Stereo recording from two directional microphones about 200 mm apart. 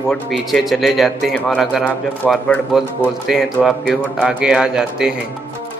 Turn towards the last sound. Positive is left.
turn(degrees=-5)  # may be behind; listen again after turning